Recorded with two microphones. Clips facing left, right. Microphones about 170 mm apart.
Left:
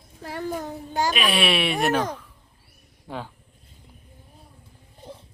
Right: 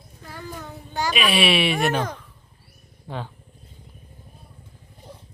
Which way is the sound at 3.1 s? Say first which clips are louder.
Right 1 dB; 5° left (ahead or behind).